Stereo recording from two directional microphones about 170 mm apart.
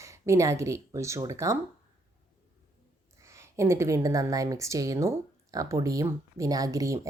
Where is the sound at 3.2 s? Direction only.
15° right (ahead or behind).